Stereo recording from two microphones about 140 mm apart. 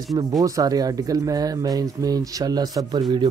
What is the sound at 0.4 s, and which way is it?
A man's voice, 25° right (ahead or behind).